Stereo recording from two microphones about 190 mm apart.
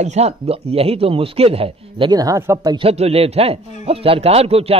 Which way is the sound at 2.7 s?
30° right (ahead or behind).